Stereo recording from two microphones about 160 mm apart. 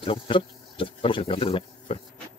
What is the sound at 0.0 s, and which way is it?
Speech, 35° left (ahead or behind).